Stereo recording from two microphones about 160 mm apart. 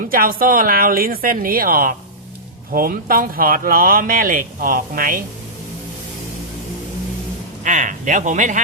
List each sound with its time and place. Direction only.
0.0 s speech: 65° right (ahead or behind)
7.6 s speech: 55° right (ahead or behind)